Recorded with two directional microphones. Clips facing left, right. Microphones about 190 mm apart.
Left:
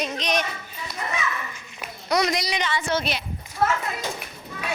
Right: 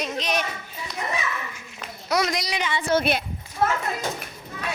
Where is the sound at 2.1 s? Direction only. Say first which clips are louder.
Left 1 dB; 5° right (ahead or behind).